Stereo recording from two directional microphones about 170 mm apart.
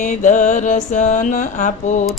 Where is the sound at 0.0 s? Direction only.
50° left (ahead or behind).